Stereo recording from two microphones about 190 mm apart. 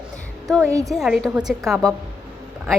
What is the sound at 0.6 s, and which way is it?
Speech, 15° right (ahead or behind).